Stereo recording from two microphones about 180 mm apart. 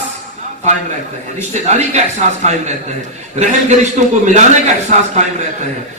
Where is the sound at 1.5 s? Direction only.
40° right (ahead or behind).